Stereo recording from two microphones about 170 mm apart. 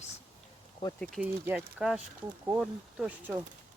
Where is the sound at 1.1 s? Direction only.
10° right (ahead or behind).